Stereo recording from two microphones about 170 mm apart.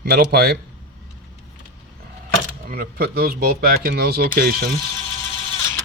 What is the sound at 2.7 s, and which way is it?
Speech, 60° right (ahead or behind).